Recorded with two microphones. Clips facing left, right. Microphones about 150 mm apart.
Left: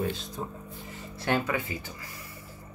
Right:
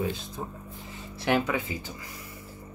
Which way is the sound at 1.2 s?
15° right (ahead or behind).